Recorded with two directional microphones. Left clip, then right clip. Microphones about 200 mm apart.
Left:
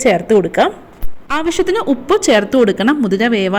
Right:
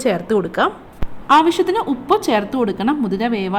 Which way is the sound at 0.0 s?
10° left (ahead or behind).